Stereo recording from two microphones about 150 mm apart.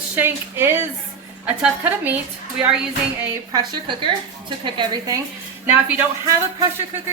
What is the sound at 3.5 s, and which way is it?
A woman's voice, 30° right (ahead or behind).